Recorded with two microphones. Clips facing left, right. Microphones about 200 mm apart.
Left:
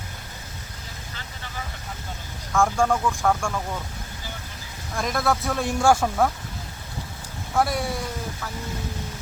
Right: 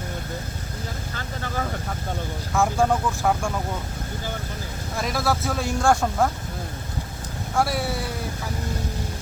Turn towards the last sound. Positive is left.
turn(degrees=-5)  # may be behind; listen again after turning